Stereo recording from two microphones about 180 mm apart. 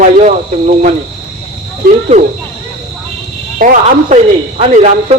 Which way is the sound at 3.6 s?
45° right (ahead or behind).